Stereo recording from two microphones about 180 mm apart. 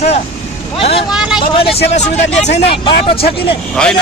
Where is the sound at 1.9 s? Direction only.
40° left (ahead or behind).